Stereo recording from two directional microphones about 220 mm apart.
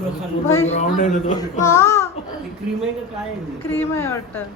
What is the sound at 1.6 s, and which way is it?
Speech, 15° left (ahead or behind).